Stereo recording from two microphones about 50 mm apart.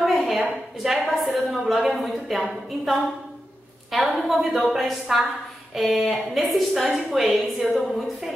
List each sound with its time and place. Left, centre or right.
0.0 s a woman's voice: centre